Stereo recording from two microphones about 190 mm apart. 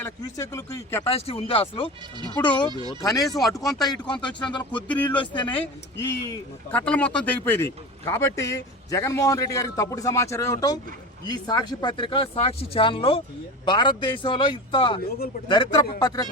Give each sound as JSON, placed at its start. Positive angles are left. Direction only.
{"t": 0.0, "sound": "speech", "side_deg": 15}
{"t": 1.0, "sound": "speech", "side_deg": 30}
{"t": 4.0, "sound": "speech", "side_deg": 5}
{"t": 4.4, "sound": "speech", "side_deg": 25}
{"t": 4.9, "sound": "speech", "side_deg": 5}
{"t": 5.1, "sound": "speech", "side_deg": 25}
{"t": 5.5, "sound": "speech", "side_deg": 15}